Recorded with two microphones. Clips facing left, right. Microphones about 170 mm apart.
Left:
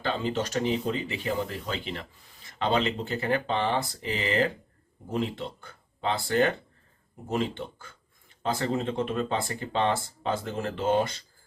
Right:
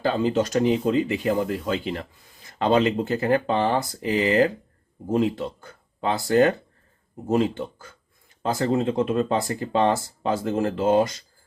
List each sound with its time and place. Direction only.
0.0 s speech: 40° right (ahead or behind)